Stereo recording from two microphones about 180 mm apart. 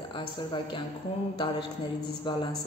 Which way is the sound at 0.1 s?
25° left (ahead or behind).